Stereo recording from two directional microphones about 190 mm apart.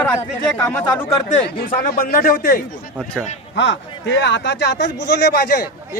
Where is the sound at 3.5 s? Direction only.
75° left (ahead or behind); by 5.7 s 55° left (ahead or behind).